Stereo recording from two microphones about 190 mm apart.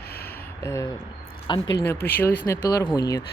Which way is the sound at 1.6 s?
70° left (ahead or behind).